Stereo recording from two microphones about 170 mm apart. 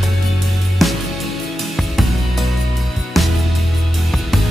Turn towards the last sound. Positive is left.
turn(degrees=0)  # may be behind; listen again after turning